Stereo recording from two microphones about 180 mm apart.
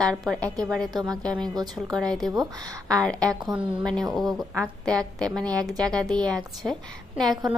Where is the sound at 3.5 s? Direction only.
10° right (ahead or behind).